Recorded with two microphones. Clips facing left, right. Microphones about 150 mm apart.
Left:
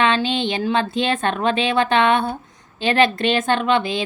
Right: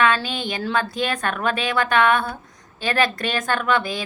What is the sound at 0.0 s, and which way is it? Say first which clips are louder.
A woman's voice: left 2 dB; 25° left (ahead or behind).